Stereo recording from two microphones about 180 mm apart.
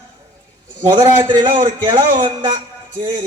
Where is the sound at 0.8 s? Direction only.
25° right (ahead or behind).